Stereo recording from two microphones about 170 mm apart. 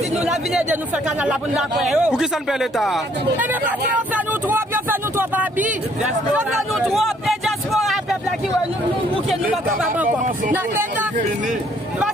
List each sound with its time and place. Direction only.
0.1 s speech: centre (ahead or behind)
6.9 s vehicle: centre (ahead or behind)
10.0 s speech: 50° right (ahead or behind)